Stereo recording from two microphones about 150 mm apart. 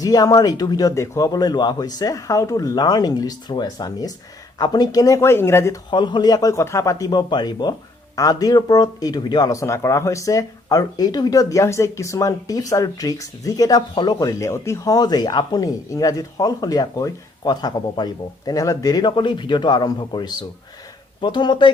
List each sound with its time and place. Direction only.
0.0 s a man's voice: 25° left (ahead or behind)
5.9 s a man's voice: 30° left (ahead or behind)